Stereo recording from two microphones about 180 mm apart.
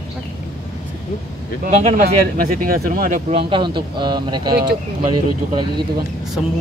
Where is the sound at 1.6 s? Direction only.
50° right (ahead or behind).